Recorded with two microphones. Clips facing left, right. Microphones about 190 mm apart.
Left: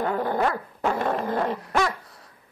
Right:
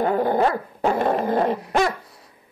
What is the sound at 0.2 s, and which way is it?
Dog, 30° right (ahead or behind).